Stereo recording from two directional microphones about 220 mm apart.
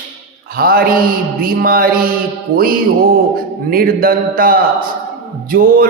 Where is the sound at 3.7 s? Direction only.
40° right (ahead or behind).